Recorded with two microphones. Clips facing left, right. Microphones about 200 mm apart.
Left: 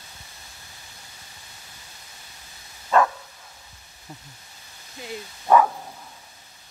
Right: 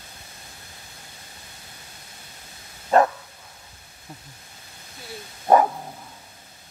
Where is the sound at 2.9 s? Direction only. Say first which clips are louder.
Right 2 dB; 40° right (ahead or behind).